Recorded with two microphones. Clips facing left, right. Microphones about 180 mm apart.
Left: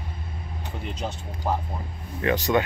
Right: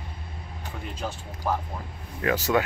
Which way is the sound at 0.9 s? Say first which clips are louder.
Left 1 dB; 20° left (ahead or behind).